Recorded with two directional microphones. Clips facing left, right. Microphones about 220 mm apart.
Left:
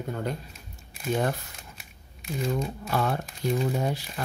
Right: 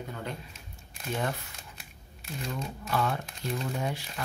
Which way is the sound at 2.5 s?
45° left (ahead or behind).